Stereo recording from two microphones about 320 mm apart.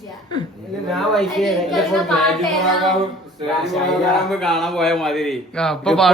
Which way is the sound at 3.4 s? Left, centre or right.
Centre.